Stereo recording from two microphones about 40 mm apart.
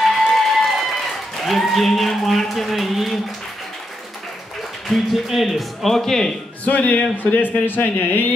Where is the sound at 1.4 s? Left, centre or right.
Centre.